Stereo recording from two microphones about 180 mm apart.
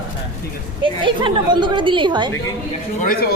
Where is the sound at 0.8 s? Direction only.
30° right (ahead or behind).